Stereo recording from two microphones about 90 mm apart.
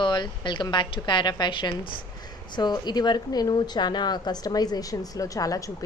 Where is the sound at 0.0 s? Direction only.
60° left (ahead or behind).